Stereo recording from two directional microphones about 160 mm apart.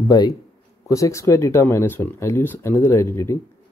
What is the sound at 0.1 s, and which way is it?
Speech, 25° left (ahead or behind).